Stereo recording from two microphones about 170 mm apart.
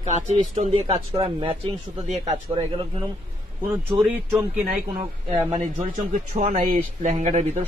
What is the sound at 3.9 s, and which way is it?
Speech, 15° right (ahead or behind).